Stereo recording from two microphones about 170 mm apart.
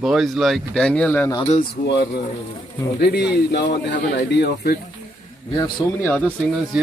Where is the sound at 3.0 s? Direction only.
70° left (ahead or behind).